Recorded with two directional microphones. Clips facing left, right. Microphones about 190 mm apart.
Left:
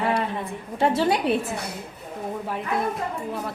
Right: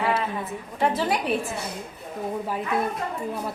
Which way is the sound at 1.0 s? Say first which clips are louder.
Left 4 dB; 25° left (ahead or behind).